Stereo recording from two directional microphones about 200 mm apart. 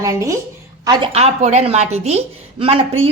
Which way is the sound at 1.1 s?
35° right (ahead or behind).